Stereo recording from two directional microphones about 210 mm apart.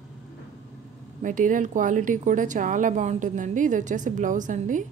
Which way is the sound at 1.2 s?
40° right (ahead or behind).